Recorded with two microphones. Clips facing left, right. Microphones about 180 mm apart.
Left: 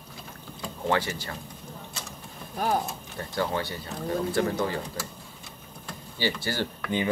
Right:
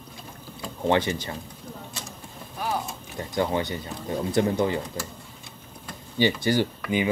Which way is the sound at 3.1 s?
20° right (ahead or behind).